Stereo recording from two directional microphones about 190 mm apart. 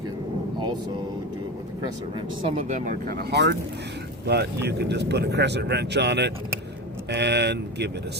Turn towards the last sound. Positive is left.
turn(degrees=-60)  # may be behind; listen again after turning